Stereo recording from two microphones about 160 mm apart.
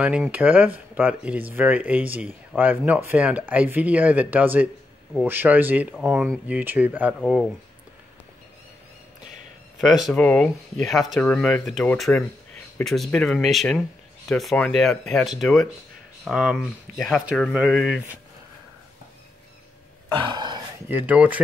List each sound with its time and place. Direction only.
0.3 s speech: 10° right (ahead or behind)
7.2 s speech: centre (ahead or behind)
9.8 s speech: centre (ahead or behind)
20.2 s a sound: 25° right (ahead or behind)
20.9 s speech: 10° right (ahead or behind)